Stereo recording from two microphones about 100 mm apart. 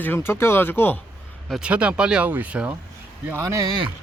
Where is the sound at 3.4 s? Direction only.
35° right (ahead or behind).